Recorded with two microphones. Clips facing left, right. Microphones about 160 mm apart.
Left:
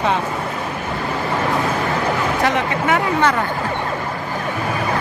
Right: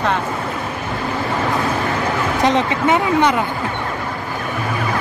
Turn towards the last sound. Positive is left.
turn(degrees=-20)  # may be behind; listen again after turning